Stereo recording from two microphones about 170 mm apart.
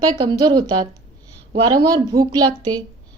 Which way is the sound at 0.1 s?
25° right (ahead or behind).